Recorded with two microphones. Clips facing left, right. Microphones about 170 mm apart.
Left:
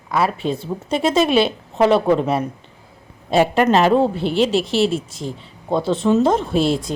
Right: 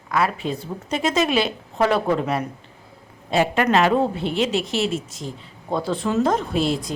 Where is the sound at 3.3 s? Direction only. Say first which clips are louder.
Left 4 dB; 35° left (ahead or behind).